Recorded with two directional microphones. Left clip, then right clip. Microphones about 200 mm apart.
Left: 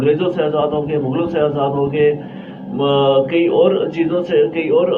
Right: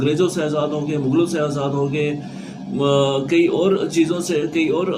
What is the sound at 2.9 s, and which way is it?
Speech, 45° right (ahead or behind).